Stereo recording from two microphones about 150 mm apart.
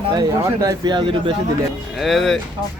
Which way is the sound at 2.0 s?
Centre (ahead or behind).